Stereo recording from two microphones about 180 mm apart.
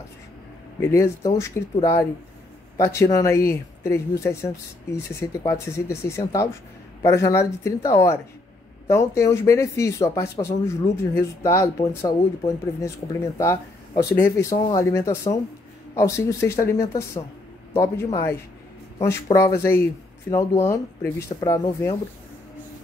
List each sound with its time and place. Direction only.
0.7 s speech: 15° left (ahead or behind)
14.1 s speech: 15° left (ahead or behind)